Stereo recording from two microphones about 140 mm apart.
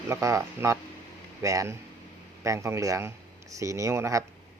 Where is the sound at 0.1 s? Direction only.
20° right (ahead or behind).